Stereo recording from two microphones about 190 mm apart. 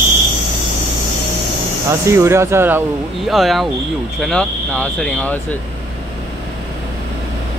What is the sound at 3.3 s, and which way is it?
Speech, centre (ahead or behind).